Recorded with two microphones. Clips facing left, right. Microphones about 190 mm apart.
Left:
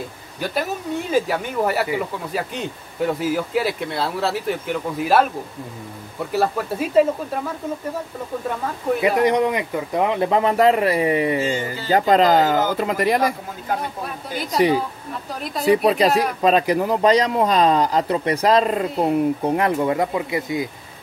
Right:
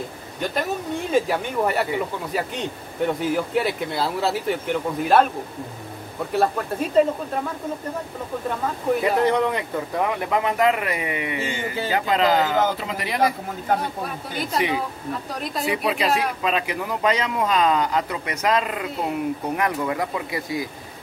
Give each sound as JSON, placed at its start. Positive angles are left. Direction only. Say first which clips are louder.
{"t": 1.1, "sound": "speech", "louder": "even", "side_deg": 0}
{"t": 6.3, "sound": "speech", "louder": "left 1 dB", "side_deg": 5}
{"t": 9.2, "sound": "speech", "louder": "left 2 dB", "side_deg": 15}
{"t": 14.0, "sound": "speech", "louder": "left 1 dB", "side_deg": 0}
{"t": 15.6, "sound": "speech", "louder": "left 8 dB", "side_deg": 40}